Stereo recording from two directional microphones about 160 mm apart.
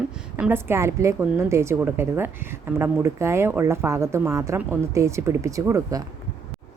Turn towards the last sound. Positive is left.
turn(degrees=-20)  # may be behind; listen again after turning